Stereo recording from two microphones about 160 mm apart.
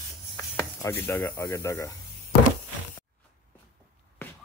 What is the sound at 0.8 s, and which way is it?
Speech, 15° left (ahead or behind).